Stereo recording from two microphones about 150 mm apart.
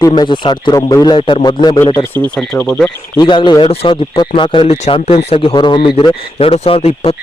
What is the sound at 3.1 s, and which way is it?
A man's voice, 30° left (ahead or behind).